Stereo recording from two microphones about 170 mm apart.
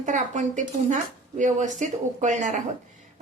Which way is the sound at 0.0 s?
45° right (ahead or behind).